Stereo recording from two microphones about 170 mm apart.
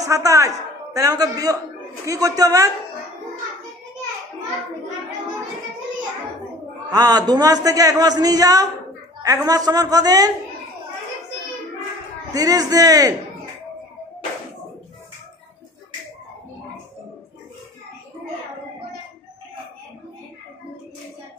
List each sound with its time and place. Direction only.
0.0 s a man's voice: 20° right (ahead or behind)
6.9 s a man's voice: 25° right (ahead or behind)
12.3 s a man's voice: 20° right (ahead or behind)